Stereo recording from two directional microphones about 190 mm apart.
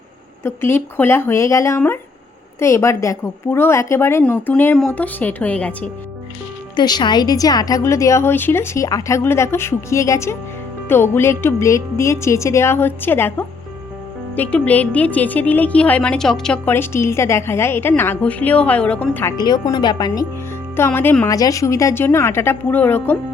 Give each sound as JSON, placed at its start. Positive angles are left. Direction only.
{"t": 0.4, "sound": "a woman's voice", "side_deg": 10}
{"t": 6.7, "sound": "a woman's voice", "side_deg": 20}
{"t": 19.4, "sound": "a woman's voice", "side_deg": 20}